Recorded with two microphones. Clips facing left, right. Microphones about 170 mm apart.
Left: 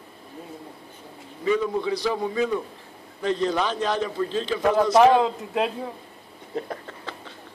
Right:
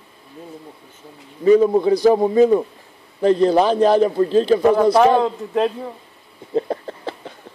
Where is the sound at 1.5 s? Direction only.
40° right (ahead or behind).